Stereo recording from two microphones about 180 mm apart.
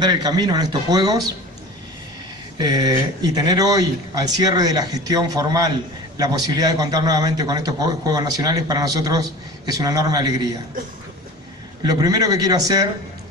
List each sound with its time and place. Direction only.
0.0 s speech: 20° right (ahead or behind)
2.6 s speech: 20° right (ahead or behind)
11.8 s speech: 20° right (ahead or behind)